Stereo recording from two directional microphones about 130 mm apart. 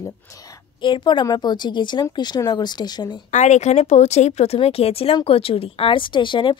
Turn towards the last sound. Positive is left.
turn(degrees=40)  # may be behind; listen again after turning